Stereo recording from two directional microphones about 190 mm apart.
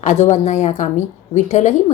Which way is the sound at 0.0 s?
40° left (ahead or behind).